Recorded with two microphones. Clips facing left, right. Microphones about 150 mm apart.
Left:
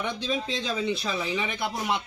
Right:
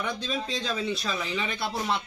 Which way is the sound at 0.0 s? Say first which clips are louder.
Left 2 dB; 15° left (ahead or behind).